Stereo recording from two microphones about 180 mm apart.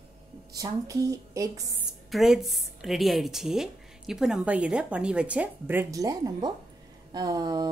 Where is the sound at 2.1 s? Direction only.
Centre (ahead or behind).